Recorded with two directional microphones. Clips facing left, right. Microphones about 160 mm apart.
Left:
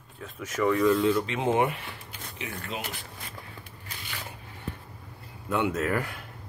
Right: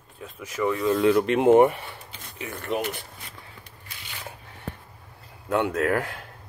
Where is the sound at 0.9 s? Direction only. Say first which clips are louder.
Right 5 dB; 65° right (ahead or behind).